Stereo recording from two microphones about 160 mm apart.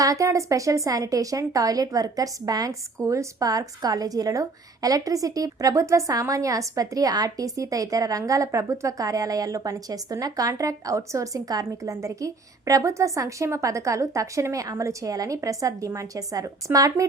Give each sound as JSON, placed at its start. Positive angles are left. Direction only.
{"t": 0.0, "sound": "a woman's voice", "side_deg": -20}